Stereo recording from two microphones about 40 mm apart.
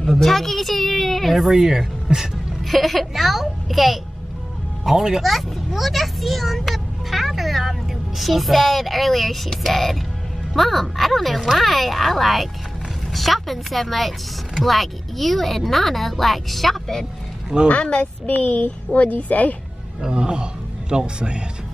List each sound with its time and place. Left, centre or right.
0.2 s speech: centre
1.5 s speech: centre
2.6 s speech: centre
17.6 s a woman's voice: left
20.0 s speech: right